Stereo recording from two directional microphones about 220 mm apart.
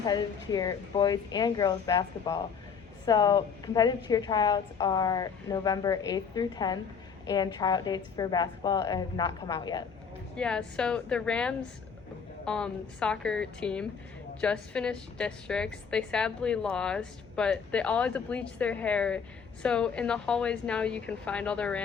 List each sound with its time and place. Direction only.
0.0 s a woman's voice: 20° left (ahead or behind)
10.3 s a woman's voice: 5° left (ahead or behind)